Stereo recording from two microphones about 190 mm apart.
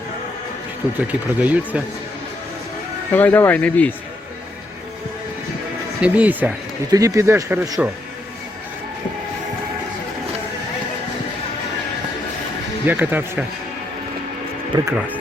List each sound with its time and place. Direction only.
1.0 s speech: 10° right (ahead or behind)
3.1 s speech: 10° left (ahead or behind)
6.0 s speech: 10° right (ahead or behind)
12.8 s speech: 10° right (ahead or behind)
14.7 s speech: 20° right (ahead or behind)